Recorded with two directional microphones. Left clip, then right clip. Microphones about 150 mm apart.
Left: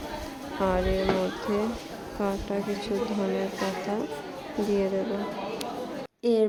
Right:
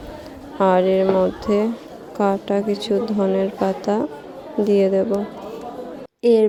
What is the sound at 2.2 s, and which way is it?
Speech, 40° right (ahead or behind).